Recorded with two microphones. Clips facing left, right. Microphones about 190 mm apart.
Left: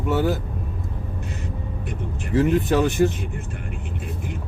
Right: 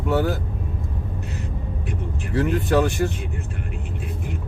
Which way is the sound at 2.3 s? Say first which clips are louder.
Left 2 dB; 20° left (ahead or behind).